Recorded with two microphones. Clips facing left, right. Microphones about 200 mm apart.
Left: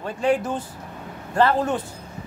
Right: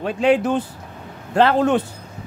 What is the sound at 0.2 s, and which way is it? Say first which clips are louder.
Speech: right 5 dB; 70° right (ahead or behind).